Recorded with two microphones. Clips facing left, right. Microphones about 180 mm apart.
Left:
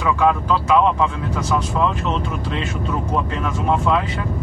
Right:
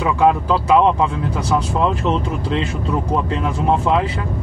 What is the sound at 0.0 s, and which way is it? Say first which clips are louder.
Speech: right 2 dB; 30° right (ahead or behind).